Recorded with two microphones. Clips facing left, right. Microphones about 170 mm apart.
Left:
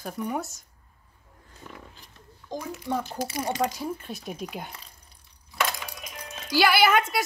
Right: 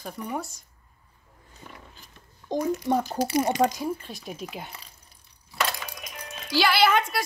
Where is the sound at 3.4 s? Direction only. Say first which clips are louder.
Right 5 dB; 20° right (ahead or behind).